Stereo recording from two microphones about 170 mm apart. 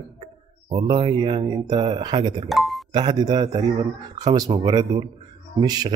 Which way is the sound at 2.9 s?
25° right (ahead or behind).